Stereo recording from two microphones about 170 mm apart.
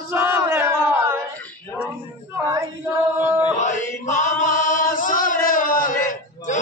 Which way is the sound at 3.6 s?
45° left (ahead or behind).